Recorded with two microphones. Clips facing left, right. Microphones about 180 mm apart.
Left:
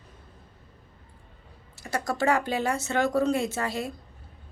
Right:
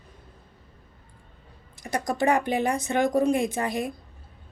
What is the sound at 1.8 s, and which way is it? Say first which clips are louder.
Speech: right 2 dB; 15° right (ahead or behind).